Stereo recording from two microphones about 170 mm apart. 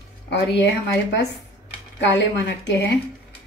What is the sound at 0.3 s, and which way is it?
A woman's voice, 90° left.